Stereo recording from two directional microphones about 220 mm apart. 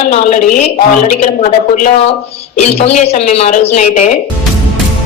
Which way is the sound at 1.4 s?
35° left (ahead or behind).